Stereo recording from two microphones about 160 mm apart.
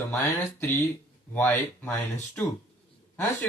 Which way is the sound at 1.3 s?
10° left (ahead or behind).